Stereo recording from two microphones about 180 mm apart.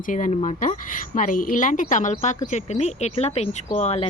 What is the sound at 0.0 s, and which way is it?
A woman's voice, 45° left (ahead or behind).